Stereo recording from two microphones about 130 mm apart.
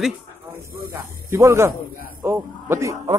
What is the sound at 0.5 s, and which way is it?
Speech, 20° right (ahead or behind).